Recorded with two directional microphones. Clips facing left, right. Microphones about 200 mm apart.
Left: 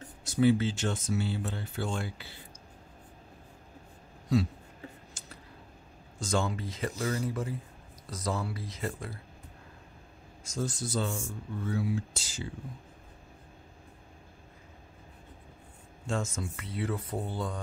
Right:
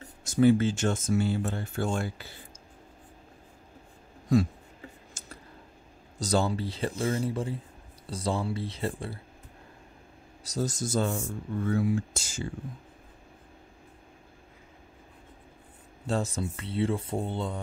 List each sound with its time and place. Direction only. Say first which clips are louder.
0.2 s speech: right 3 dB; 45° right (ahead or behind)
5.2 s a sound: right 2 dB; 45° right (ahead or behind)
6.1 s speech: right 4 dB; 35° right (ahead or behind)
10.4 s speech: right 3 dB; 40° right (ahead or behind)
16.1 s speech: right 4 dB; 35° right (ahead or behind)